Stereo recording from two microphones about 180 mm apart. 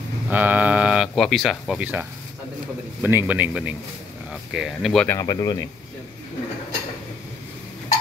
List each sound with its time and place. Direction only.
0.3 s a man's voice: 10° right (ahead or behind)
5.1 s speech: 20° left (ahead or behind)